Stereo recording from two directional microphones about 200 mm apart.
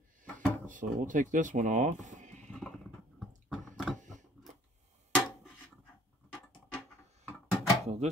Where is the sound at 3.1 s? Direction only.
Centre (ahead or behind).